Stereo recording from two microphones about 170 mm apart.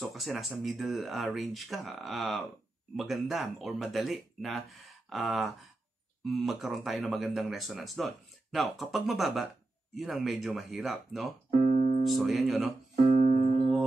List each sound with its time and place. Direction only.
0.0 s speech: centre (ahead or behind)
11.6 s keyboard: 35° left (ahead or behind)
12.1 s speech: centre (ahead or behind)
13.0 s music: 35° left (ahead or behind)